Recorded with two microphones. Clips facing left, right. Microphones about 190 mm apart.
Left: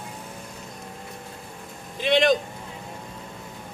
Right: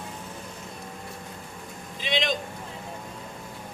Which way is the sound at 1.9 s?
55° left (ahead or behind).